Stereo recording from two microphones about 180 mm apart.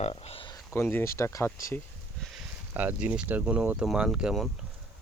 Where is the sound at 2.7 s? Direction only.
10° right (ahead or behind).